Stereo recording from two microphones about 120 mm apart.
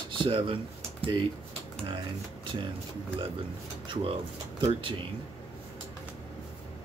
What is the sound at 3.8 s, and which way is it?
Speech, 45° right (ahead or behind).